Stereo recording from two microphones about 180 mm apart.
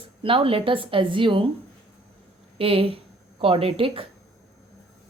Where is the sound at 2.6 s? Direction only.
30° right (ahead or behind).